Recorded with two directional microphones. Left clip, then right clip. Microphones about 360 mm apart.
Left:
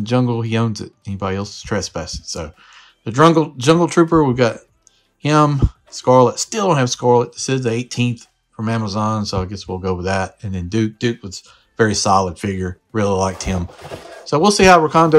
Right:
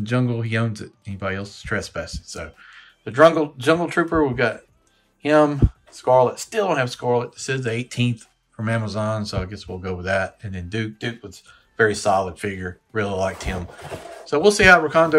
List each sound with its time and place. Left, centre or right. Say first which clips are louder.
0.0 s speech: left 5 dB; centre